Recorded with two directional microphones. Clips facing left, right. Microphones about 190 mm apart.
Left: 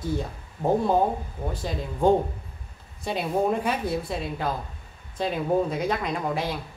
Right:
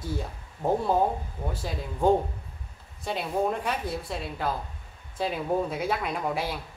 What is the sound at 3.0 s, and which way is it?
A woman's voice, centre (ahead or behind).